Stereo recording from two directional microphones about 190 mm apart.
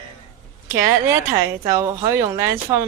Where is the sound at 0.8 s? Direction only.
15° right (ahead or behind).